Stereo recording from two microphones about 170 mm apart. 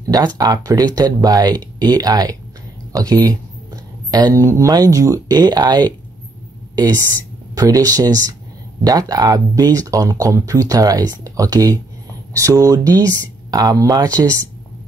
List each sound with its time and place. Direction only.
0.4 s speech: 20° right (ahead or behind)
7.5 s speech: 20° right (ahead or behind)